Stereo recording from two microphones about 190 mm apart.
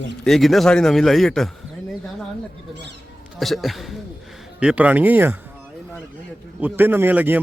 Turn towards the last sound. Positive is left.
turn(degrees=-10)  # may be behind; listen again after turning